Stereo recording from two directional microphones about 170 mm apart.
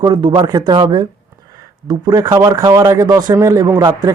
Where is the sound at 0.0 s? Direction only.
25° right (ahead or behind).